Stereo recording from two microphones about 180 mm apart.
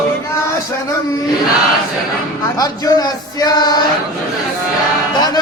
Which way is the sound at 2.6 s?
20° left (ahead or behind).